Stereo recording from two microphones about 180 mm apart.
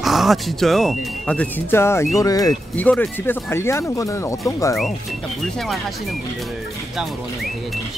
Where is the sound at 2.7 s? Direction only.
10° left (ahead or behind).